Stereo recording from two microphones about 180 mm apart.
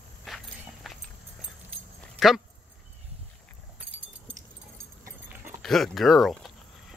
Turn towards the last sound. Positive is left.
turn(degrees=0)  # may be behind; listen again after turning